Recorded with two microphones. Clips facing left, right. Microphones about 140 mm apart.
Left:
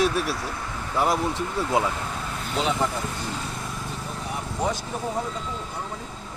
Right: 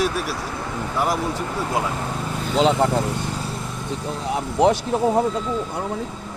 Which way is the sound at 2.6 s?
85° right.